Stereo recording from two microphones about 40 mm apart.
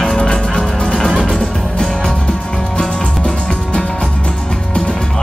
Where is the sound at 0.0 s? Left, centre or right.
Left.